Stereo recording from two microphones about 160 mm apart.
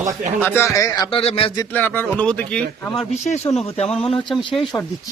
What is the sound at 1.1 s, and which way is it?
Speech, 35° left (ahead or behind).